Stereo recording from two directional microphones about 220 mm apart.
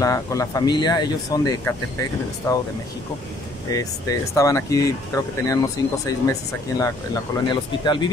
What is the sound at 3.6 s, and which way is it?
Speech, 15° left (ahead or behind).